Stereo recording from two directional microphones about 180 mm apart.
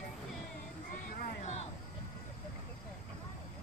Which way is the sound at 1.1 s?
45° left (ahead or behind).